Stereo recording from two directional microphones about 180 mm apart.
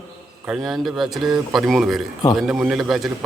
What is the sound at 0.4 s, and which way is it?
A man's voice, centre (ahead or behind).